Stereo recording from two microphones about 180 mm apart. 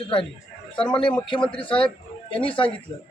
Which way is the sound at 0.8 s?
25° left (ahead or behind).